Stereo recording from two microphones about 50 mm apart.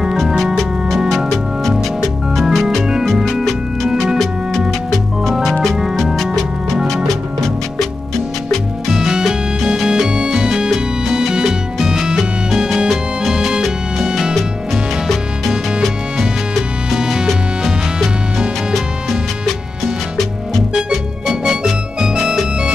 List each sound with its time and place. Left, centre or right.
0.3 s music: centre
0.8 s music: centre
2.4 s organ: centre
3.9 s music: centre
4.2 s music: centre
8.9 s music: centre
14.3 s music: centre
16.9 s music: centre
18.7 s music: centre